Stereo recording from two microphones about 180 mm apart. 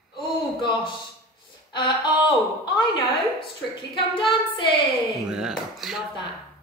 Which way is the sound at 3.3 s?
25° left (ahead or behind).